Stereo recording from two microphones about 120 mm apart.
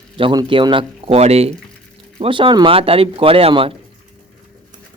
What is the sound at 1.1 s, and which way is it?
Speech, 60° right (ahead or behind).